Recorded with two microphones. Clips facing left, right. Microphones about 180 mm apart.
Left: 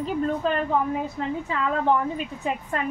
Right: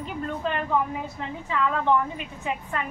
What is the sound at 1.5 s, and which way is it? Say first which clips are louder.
A woman's voice: right 1 dB; 40° left (ahead or behind).